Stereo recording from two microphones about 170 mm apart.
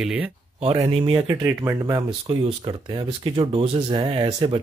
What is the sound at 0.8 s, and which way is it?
Speech, 35° right (ahead or behind).